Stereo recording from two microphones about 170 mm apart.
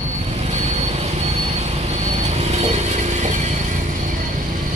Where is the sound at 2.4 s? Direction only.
40° right (ahead or behind).